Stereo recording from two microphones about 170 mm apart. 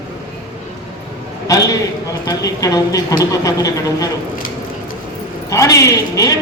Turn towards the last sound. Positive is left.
turn(degrees=20)  # may be behind; listen again after turning